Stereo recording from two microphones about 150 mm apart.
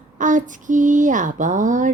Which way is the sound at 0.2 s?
60° right (ahead or behind).